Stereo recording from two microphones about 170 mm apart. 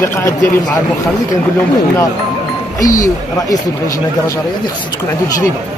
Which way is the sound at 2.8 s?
20° left (ahead or behind).